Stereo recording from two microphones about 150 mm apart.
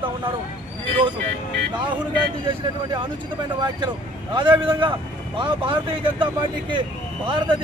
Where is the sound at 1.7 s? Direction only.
30° right (ahead or behind).